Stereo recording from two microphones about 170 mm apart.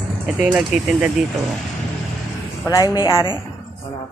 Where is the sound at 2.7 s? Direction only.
25° left (ahead or behind).